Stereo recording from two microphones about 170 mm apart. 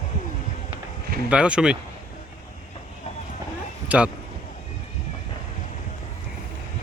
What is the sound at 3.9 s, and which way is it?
Speech, 5° right (ahead or behind).